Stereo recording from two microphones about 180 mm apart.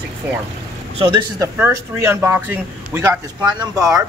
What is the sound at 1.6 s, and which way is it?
A man's voice, 15° right (ahead or behind).